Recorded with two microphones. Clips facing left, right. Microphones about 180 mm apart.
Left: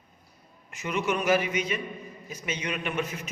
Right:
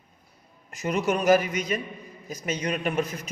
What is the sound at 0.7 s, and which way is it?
A man's voice, 40° right (ahead or behind).